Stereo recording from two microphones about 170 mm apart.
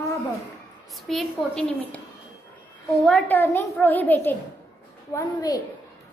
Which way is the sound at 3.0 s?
10° left (ahead or behind).